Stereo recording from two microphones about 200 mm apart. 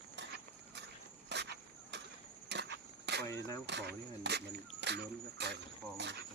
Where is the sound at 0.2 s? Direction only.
60° right (ahead or behind).